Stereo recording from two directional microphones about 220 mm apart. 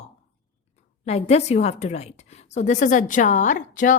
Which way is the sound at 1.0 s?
30° left (ahead or behind).